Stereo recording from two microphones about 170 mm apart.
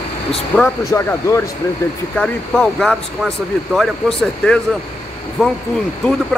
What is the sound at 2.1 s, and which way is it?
Speech, 5° left (ahead or behind).